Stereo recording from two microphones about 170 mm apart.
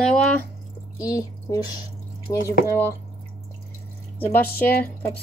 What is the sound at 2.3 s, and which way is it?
Speech, 35° left (ahead or behind).